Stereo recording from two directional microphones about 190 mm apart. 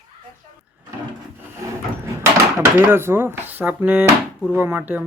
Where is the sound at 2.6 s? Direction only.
10° right (ahead or behind).